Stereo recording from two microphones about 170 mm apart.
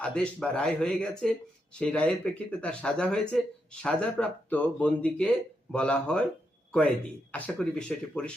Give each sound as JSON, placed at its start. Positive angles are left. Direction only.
{"t": 0.0, "sound": "speech", "side_deg": 5}
{"t": 7.3, "sound": "speech", "side_deg": 5}